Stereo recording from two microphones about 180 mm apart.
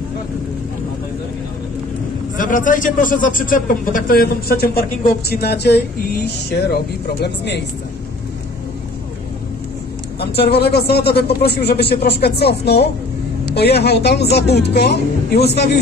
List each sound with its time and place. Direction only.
2.3 s a man's voice: 45° left (ahead or behind); by 7.6 s 70° left (ahead or behind)
10.2 s a woman's voice: 65° left (ahead or behind)